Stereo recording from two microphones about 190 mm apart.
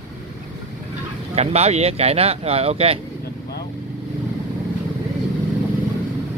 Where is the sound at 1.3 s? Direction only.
35° right (ahead or behind).